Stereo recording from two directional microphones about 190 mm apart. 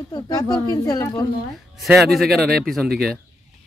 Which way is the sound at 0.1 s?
20° left (ahead or behind).